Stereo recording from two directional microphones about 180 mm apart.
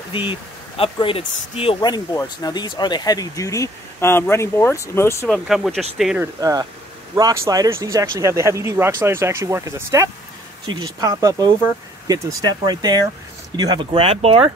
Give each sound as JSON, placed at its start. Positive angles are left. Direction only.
{"t": 0.1, "sound": "speech", "side_deg": 30}
{"t": 5.3, "sound": "speech", "side_deg": 0}
{"t": 6.4, "sound": "speech", "side_deg": -20}